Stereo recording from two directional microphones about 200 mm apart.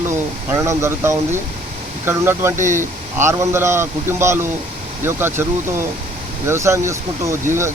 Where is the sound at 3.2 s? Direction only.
15° right (ahead or behind).